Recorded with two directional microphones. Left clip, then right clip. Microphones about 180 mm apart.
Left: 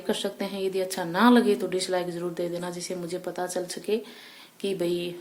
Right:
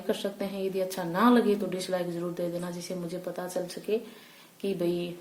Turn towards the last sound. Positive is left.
turn(degrees=15)  # may be behind; listen again after turning